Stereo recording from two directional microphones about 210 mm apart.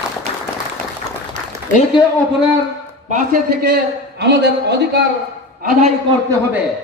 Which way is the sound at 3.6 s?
55° right (ahead or behind).